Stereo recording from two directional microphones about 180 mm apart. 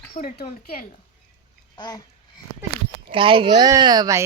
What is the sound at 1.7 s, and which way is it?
Babbling, 20° left (ahead or behind).